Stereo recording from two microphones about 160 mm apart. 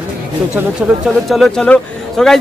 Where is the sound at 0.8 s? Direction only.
Centre (ahead or behind).